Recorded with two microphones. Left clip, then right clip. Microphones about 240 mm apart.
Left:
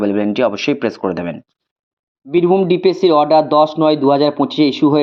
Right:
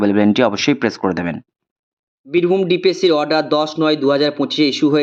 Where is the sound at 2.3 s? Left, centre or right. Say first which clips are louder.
Left 2 dB; left.